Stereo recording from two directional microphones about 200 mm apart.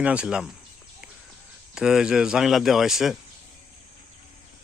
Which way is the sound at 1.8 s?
5° right (ahead or behind).